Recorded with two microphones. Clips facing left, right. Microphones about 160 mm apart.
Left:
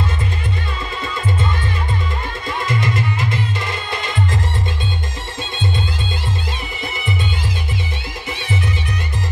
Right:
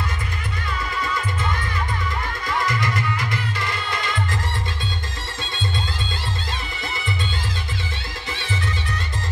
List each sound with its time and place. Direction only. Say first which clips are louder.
2.6 s music: left 5 dB; 20° left (ahead or behind)